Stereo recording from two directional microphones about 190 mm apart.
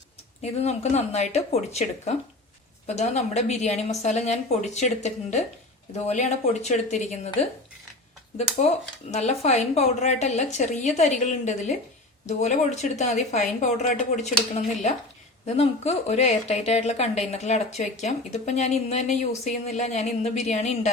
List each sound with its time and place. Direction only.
0.6 s speech: 35° left (ahead or behind)
9.1 s speech: 35° left (ahead or behind)